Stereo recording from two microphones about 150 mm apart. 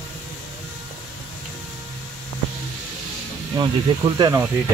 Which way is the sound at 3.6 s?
30° right (ahead or behind).